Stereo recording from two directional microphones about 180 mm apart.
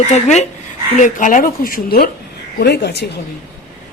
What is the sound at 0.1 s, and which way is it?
Speech, 40° left (ahead or behind).